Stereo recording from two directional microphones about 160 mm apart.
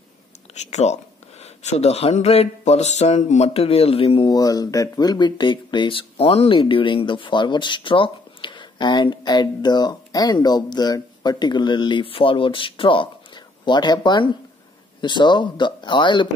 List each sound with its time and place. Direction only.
0.6 s speech: 45° left (ahead or behind); by 16.3 s 30° left (ahead or behind)